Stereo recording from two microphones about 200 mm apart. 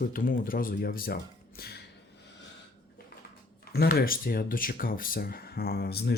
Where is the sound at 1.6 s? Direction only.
50° left (ahead or behind).